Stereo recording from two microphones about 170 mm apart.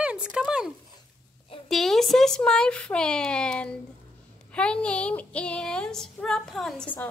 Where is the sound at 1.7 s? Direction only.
Centre (ahead or behind).